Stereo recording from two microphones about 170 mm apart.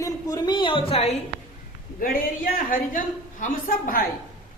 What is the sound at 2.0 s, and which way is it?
A woman's voice, 55° left (ahead or behind).